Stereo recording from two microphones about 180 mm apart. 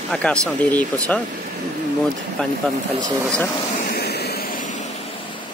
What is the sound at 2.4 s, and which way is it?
Speech, 5° left (ahead or behind).